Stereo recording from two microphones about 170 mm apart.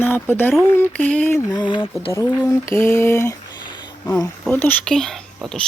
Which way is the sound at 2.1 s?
15° left (ahead or behind).